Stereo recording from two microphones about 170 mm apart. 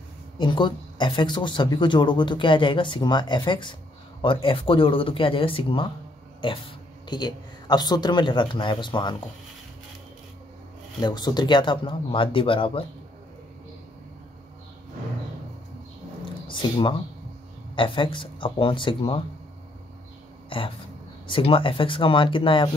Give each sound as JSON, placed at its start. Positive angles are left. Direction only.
{"t": 0.4, "sound": "speech", "side_deg": 30}
{"t": 11.0, "sound": "speech", "side_deg": 25}
{"t": 17.7, "sound": "speech", "side_deg": 30}
{"t": 20.4, "sound": "speech", "side_deg": 30}